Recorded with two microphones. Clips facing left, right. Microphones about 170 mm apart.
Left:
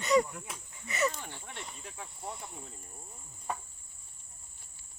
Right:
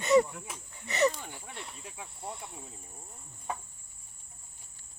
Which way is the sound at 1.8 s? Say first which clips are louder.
Even; 10° right (ahead or behind).